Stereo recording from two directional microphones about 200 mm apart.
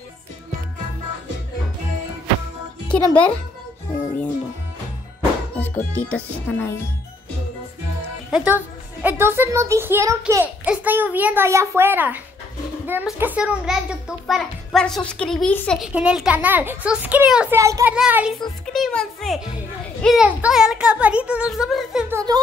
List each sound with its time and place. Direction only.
2.9 s a child's voice: 5° left (ahead or behind)
5.6 s speech: 10° left (ahead or behind)
8.3 s a child's voice: 5° right (ahead or behind)
15.9 s a child's voice: 5° right (ahead or behind)
22.1 s speech: 20° right (ahead or behind)